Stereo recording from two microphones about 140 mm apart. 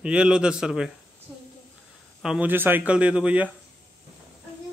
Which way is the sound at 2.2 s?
10° right (ahead or behind).